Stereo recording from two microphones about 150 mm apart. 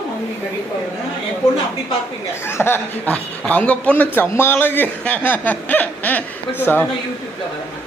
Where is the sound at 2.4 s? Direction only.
15° left (ahead or behind).